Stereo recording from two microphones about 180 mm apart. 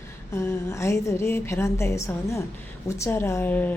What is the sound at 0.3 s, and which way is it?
A woman's voice, 15° left (ahead or behind).